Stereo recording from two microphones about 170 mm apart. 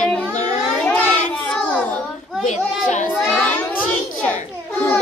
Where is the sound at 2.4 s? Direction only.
45° left (ahead or behind).